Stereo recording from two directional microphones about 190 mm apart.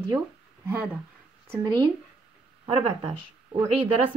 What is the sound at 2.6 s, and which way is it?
Speech, 30° right (ahead or behind).